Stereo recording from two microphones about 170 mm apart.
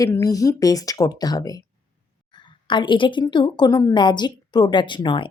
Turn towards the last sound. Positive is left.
turn(degrees=30)  # may be behind; listen again after turning